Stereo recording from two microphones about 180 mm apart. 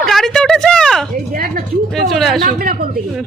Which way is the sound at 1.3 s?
50° right (ahead or behind).